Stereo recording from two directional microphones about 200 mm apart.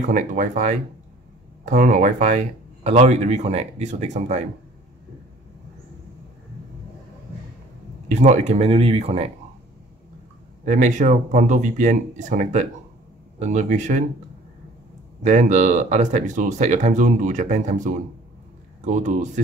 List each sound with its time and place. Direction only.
0.0 s speech: 40° right (ahead or behind)
8.1 s speech: 35° right (ahead or behind)
10.6 s speech: 40° right (ahead or behind)
15.2 s speech: 35° right (ahead or behind)